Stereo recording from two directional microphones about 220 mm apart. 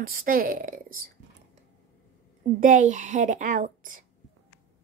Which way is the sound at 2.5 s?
35° right (ahead or behind).